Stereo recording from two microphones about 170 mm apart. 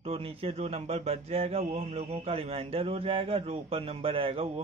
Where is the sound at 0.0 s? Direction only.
35° right (ahead or behind).